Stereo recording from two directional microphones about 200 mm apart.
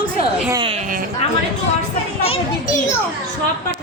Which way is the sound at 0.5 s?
25° right (ahead or behind).